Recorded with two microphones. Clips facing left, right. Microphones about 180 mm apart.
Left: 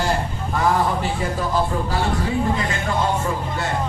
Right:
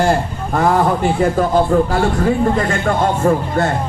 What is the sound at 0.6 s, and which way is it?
Speech, 55° right (ahead or behind).